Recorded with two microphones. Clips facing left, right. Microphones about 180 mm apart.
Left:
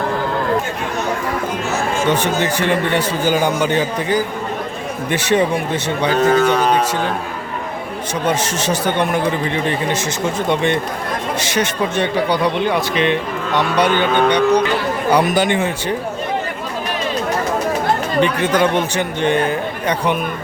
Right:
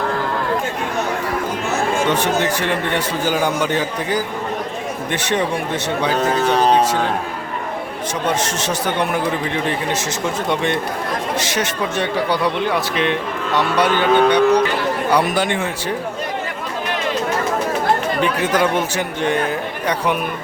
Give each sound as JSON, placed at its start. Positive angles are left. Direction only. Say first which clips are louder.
{"t": 2.0, "sound": "a man's voice", "louder": "left 1 dB", "side_deg": 0}
{"t": 6.4, "sound": "speech", "louder": "even", "side_deg": -30}
{"t": 8.4, "sound": "a man's voice", "louder": "left 2 dB", "side_deg": 0}
{"t": 18.2, "sound": "a man's voice", "louder": "left 2 dB", "side_deg": -5}